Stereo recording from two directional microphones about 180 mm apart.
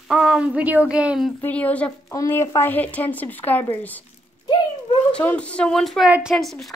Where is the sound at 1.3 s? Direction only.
10° left (ahead or behind).